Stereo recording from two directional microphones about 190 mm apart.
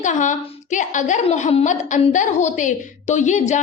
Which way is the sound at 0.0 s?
40° left (ahead or behind).